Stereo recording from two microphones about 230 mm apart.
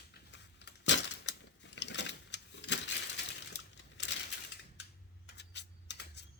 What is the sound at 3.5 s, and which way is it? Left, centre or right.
Crumpling, left.